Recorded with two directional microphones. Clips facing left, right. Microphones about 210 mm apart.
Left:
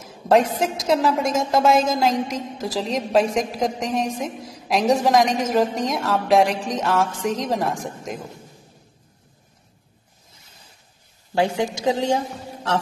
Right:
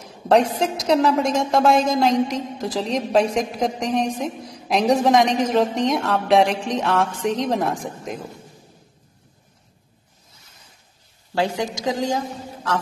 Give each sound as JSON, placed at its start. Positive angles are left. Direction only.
{"t": 0.3, "sound": "a woman's voice", "side_deg": 0}
{"t": 11.3, "sound": "a woman's voice", "side_deg": 20}